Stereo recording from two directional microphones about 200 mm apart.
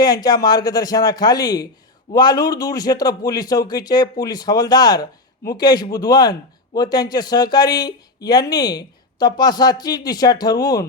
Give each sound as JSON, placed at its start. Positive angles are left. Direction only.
{"t": 0.0, "sound": "speech", "side_deg": 20}